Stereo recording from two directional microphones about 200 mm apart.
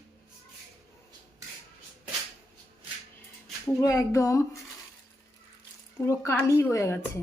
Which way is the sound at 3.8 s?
15° left (ahead or behind).